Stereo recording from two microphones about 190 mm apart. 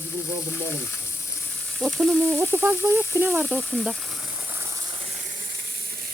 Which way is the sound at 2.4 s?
10° right (ahead or behind).